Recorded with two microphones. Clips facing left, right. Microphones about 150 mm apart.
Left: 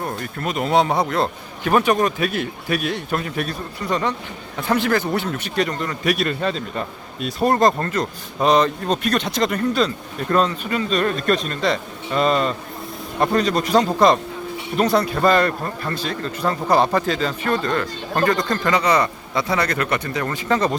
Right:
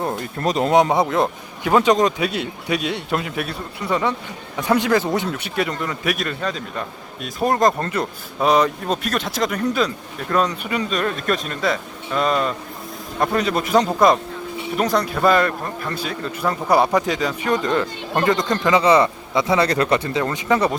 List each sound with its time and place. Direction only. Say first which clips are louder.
0.4 s speech: right 4 dB; 35° right (ahead or behind)
0.7 s a man's voice: right 1 dB; 20° right (ahead or behind)
4.7 s a man's voice: right 2 dB; 15° right (ahead or behind)
6.1 s a man's voice: left 4 dB; centre (ahead or behind)
10.9 s a man's voice: left 4 dB; centre (ahead or behind); by 20.4 s 25° right (ahead or behind)
20.5 s a man's voice: right 1 dB; 10° right (ahead or behind)